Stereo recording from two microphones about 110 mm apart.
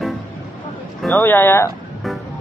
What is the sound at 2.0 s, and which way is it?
Music, centre (ahead or behind).